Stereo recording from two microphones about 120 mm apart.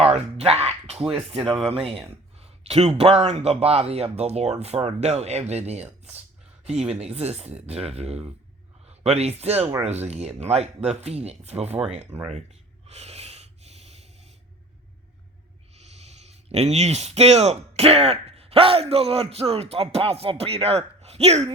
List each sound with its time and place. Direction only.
0.0 s a sound: 60° right (ahead or behind)
1.5 s a man's voice: 55° right (ahead or behind)
12.9 s snort: 65° right (ahead or behind)
15.7 s speech: 65° right (ahead or behind)